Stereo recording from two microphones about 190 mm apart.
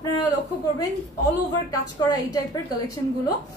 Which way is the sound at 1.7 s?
20° left (ahead or behind).